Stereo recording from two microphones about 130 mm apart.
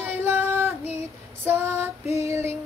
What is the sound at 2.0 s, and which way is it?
Female singing, 55° left (ahead or behind).